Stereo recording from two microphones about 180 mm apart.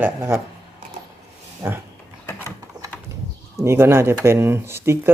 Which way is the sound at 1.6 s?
15° right (ahead or behind).